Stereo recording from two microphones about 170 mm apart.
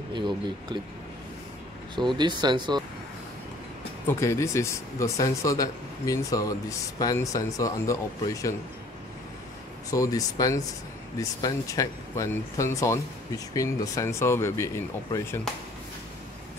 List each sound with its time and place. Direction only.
0.1 s speech: 25° right (ahead or behind)
2.0 s speech: 25° right (ahead or behind)
4.1 s speech: 15° left (ahead or behind)
9.8 s speech: 20° left (ahead or behind)
15.5 s speech: centre (ahead or behind)